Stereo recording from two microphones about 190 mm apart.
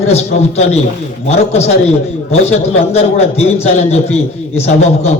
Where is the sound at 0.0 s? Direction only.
35° left (ahead or behind).